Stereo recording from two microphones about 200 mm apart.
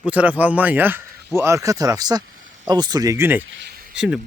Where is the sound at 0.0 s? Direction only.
5° right (ahead or behind).